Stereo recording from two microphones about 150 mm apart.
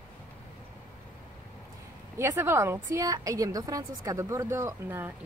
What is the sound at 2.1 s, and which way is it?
A woman's voice, 15° right (ahead or behind).